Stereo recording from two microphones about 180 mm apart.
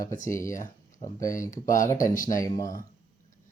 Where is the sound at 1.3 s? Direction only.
45° left (ahead or behind).